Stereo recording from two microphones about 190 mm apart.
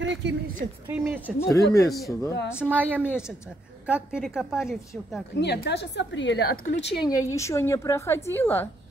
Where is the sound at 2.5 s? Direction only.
5° right (ahead or behind).